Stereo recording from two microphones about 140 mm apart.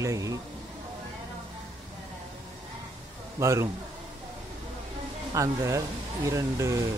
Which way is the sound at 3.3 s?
20° right (ahead or behind).